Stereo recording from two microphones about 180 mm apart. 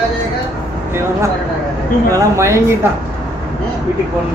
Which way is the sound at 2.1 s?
15° right (ahead or behind).